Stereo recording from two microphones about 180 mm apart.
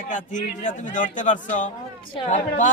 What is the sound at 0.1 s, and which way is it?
A man's voice, 45° left (ahead or behind).